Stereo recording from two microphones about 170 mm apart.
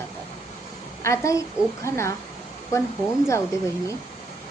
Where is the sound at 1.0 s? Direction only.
20° left (ahead or behind).